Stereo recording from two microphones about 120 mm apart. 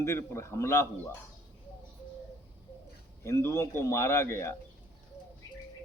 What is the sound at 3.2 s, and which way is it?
A man's voice, 25° left (ahead or behind).